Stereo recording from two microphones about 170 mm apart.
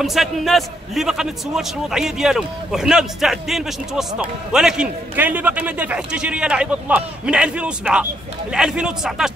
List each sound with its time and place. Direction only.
0.0 s a man's voice: centre (ahead or behind)